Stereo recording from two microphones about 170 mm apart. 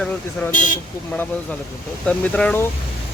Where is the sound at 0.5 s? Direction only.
50° left (ahead or behind).